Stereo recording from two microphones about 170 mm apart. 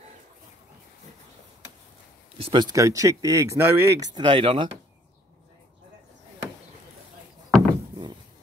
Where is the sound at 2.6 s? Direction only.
20° right (ahead or behind).